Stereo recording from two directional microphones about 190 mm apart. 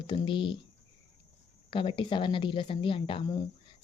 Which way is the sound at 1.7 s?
25° left (ahead or behind).